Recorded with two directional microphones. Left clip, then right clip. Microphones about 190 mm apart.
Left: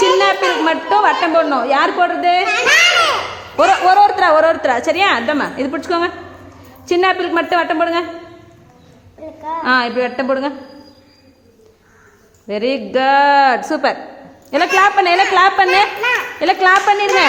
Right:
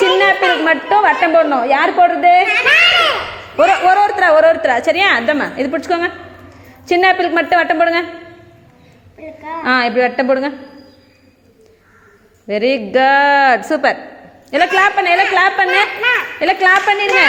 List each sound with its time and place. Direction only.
0.0 s a sound: centre (ahead or behind)
3.6 s a woman's voice: 5° left (ahead or behind)
9.6 s a woman's voice: 5° right (ahead or behind)
12.5 s a woman's voice: centre (ahead or behind); by 15.8 s 15° left (ahead or behind)
16.0 s a woman's voice: 10° right (ahead or behind)
16.4 s a woman's voice: 5° left (ahead or behind)